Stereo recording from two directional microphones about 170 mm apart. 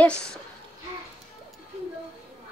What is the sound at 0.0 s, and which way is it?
Speech, 5° left (ahead or behind).